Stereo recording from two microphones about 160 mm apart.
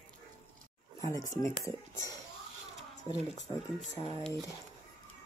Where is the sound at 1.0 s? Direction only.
20° left (ahead or behind).